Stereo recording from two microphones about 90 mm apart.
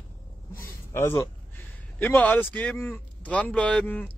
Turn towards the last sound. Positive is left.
turn(degrees=15)  # may be behind; listen again after turning